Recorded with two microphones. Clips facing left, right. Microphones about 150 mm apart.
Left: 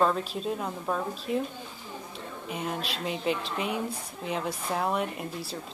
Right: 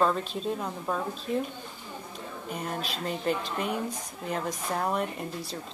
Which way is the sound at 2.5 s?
Centre (ahead or behind).